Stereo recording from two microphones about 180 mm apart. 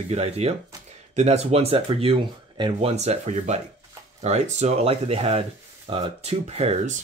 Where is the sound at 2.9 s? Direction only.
40° right (ahead or behind).